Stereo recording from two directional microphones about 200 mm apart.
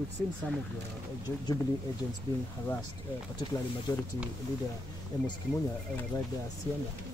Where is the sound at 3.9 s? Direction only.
20° left (ahead or behind).